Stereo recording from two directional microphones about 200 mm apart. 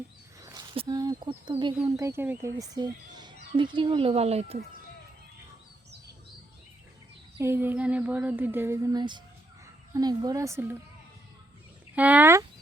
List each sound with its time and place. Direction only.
0.4 s speech: 20° right (ahead or behind)
2.0 s speech: 15° right (ahead or behind); by 4.5 s 30° right (ahead or behind)
7.3 s speech: 10° right (ahead or behind)
11.9 s speech: 5° right (ahead or behind)